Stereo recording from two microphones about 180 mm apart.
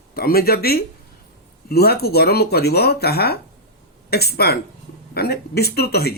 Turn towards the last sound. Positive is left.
turn(degrees=60)  # may be behind; listen again after turning